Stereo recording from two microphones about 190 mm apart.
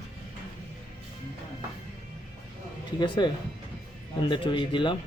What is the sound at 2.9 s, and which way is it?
Speech, 25° left (ahead or behind).